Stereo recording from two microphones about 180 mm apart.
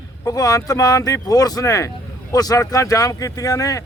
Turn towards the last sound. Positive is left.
turn(degrees=20)  # may be behind; listen again after turning